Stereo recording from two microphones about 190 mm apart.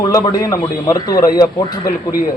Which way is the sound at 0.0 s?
20° left (ahead or behind).